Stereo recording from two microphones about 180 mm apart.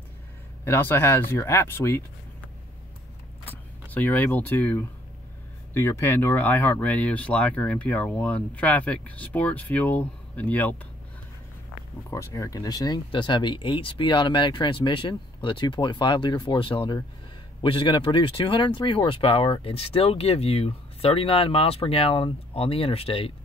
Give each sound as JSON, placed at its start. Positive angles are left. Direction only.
{"t": 0.7, "sound": "speech", "side_deg": 10}
{"t": 3.9, "sound": "speech", "side_deg": 10}
{"t": 12.1, "sound": "speech", "side_deg": 20}